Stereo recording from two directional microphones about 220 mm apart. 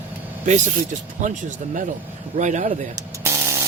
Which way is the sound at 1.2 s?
35° right (ahead or behind).